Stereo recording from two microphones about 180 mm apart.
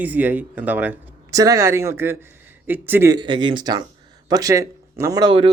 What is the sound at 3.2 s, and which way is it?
Speech, 25° right (ahead or behind).